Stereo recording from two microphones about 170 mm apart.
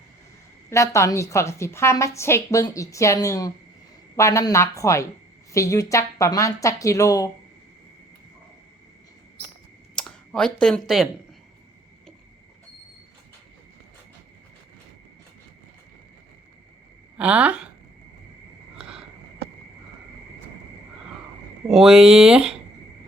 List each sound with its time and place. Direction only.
0.7 s a woman's voice: 15° left (ahead or behind)
9.9 s speech: 5° left (ahead or behind)
17.2 s speech: 10° right (ahead or behind)
18.8 s a sound: 5° right (ahead or behind)
21.7 s speech: centre (ahead or behind)